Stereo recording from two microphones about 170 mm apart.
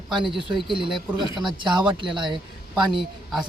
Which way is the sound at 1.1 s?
30° left (ahead or behind).